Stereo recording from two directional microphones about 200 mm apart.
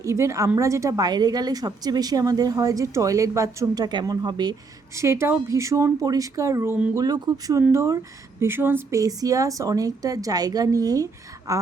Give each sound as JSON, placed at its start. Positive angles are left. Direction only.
{"t": 0.0, "sound": "a woman's voice", "side_deg": -15}